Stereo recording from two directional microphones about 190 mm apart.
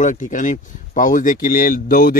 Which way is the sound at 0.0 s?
40° left (ahead or behind).